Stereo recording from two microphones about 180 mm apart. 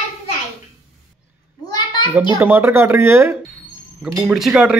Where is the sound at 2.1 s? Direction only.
10° right (ahead or behind).